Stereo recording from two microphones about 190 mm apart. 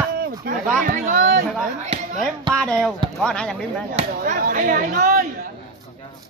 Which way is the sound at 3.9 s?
45° right (ahead or behind).